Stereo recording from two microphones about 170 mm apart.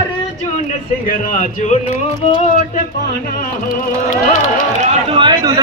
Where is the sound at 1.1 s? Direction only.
50° left (ahead or behind).